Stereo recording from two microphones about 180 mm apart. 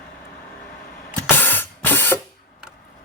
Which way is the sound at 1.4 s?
10° left (ahead or behind).